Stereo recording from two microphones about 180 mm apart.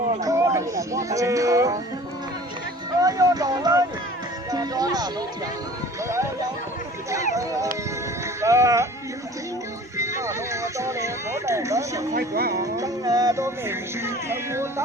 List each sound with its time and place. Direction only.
0.2 s speech: 20° right (ahead or behind)
3.0 s speech: 20° right (ahead or behind)
7.3 s music: 20° right (ahead or behind)
10.0 s music: 15° right (ahead or behind)
12.1 s speech: 55° right (ahead or behind)
12.6 s music: 20° right (ahead or behind)